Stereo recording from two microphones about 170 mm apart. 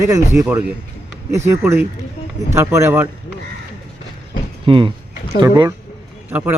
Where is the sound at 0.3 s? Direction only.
75° right (ahead or behind).